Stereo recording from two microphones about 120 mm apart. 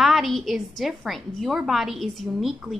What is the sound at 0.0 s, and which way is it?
A woman's voice, centre (ahead or behind).